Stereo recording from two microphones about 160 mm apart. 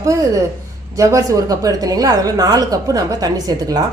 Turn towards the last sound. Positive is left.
turn(degrees=-20)  # may be behind; listen again after turning